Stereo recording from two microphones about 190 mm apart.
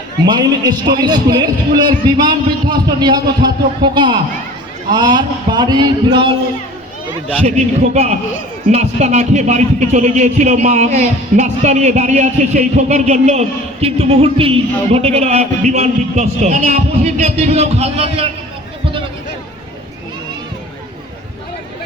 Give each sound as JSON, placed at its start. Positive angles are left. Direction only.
{"t": 0.3, "sound": "a man's voice", "side_deg": -20}
{"t": 7.9, "sound": "speech", "side_deg": -35}